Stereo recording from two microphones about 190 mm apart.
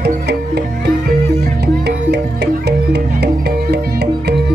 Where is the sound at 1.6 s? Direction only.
60° right (ahead or behind).